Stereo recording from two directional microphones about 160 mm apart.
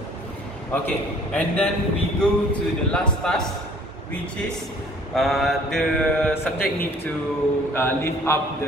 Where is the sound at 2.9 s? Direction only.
5° left (ahead or behind).